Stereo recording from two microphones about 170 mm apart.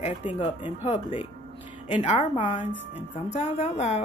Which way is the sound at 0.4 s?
30° left (ahead or behind).